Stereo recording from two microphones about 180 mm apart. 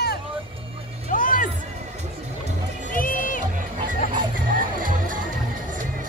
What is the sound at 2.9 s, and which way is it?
Music, 50° left (ahead or behind).